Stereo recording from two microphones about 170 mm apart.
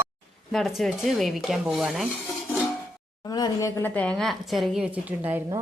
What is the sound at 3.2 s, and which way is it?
Speech, 20° left (ahead or behind).